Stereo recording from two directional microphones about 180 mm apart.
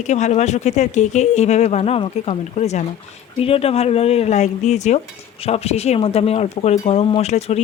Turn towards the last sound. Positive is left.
turn(degrees=35)  # may be behind; listen again after turning